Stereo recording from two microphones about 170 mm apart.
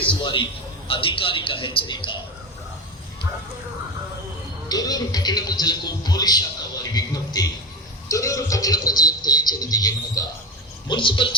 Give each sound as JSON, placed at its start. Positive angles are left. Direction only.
{"t": 0.2, "sound": "a man's voice", "side_deg": 30}
{"t": 4.7, "sound": "speech", "side_deg": 20}